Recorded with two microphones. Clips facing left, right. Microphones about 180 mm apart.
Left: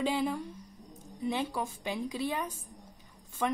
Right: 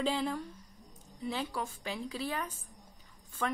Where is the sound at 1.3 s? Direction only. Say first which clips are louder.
Left 3 dB; 20° left (ahead or behind).